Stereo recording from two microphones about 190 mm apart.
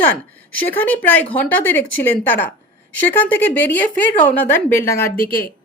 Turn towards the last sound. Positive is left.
turn(degrees=50)  # may be behind; listen again after turning